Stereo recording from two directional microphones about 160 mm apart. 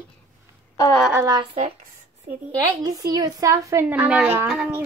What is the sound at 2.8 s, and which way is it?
A woman's voice, 25° right (ahead or behind).